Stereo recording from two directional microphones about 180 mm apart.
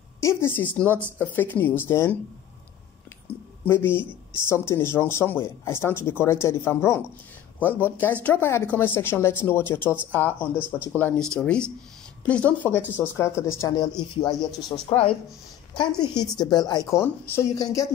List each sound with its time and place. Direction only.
0.2 s speech: 15° left (ahead or behind)
3.3 s a sound: 5° left (ahead or behind)
3.6 s speech: 10° left (ahead or behind)
16.2 s speech: 20° left (ahead or behind)